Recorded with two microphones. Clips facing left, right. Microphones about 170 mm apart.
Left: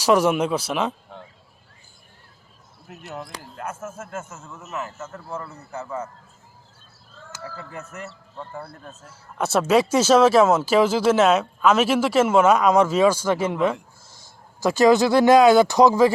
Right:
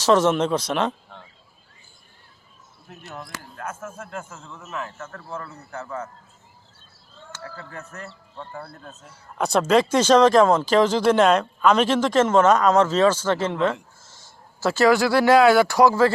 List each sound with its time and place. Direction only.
0.0 s speech: 10° left (ahead or behind)
2.9 s speech: 5° left (ahead or behind)
7.3 s speech: 5° left (ahead or behind)